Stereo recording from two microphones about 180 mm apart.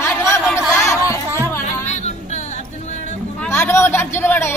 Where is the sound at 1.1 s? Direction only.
15° right (ahead or behind).